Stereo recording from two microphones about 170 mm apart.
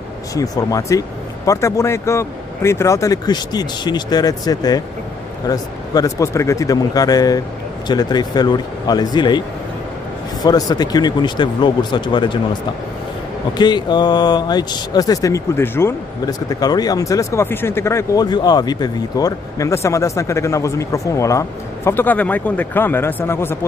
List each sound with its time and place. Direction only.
0.3 s speech: 20° left (ahead or behind)
10.4 s speech: 25° left (ahead or behind)
13.6 s speech: 25° left (ahead or behind)